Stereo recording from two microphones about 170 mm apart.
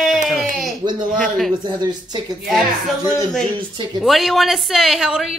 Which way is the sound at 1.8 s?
25° right (ahead or behind).